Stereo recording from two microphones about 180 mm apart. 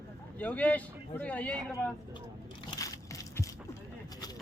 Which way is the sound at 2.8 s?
20° left (ahead or behind).